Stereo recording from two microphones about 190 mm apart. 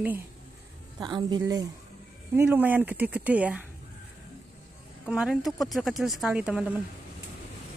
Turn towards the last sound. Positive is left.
turn(degrees=-5)  # may be behind; listen again after turning